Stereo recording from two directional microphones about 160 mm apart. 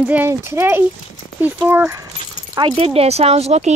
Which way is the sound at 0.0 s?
10° right (ahead or behind).